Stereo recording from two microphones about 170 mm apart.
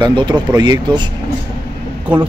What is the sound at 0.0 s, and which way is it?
Speech, 25° right (ahead or behind).